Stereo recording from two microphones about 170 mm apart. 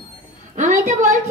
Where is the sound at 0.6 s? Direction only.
45° right (ahead or behind).